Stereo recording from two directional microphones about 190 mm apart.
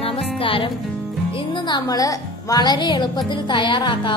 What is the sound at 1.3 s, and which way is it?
A woman's voice, 25° left (ahead or behind).